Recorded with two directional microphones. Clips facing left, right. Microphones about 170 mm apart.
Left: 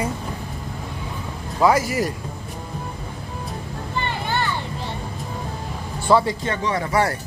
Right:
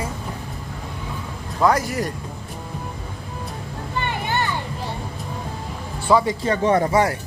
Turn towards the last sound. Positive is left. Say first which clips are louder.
# right 2 dB
turn(degrees=-15)  # may be behind; listen again after turning